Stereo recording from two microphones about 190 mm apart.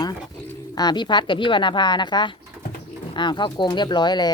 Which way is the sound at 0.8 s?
25° left (ahead or behind).